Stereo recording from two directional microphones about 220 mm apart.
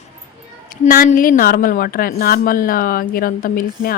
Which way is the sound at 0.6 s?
40° left (ahead or behind).